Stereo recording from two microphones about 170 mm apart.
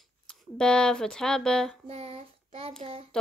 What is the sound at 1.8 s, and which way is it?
Child singing, 35° right (ahead or behind).